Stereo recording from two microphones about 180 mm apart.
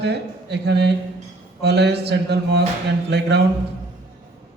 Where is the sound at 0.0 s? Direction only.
65° right (ahead or behind).